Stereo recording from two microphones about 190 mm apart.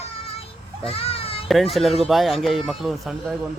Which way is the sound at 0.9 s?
30° left (ahead or behind).